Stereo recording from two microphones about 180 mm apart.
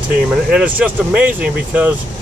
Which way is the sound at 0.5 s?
5° right (ahead or behind).